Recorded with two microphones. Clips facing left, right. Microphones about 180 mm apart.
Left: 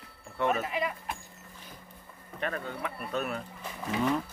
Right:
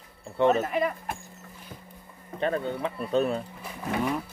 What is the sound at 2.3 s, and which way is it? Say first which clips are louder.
Speech: right 7 dB; 30° right (ahead or behind).